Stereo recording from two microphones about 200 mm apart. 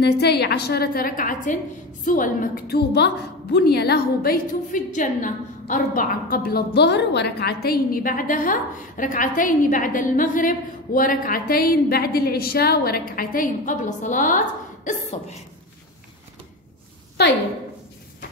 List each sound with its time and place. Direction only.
0.0 s a woman's voice: 55° left (ahead or behind); by 14.4 s 40° left (ahead or behind)
14.9 s cough: 35° left (ahead or behind)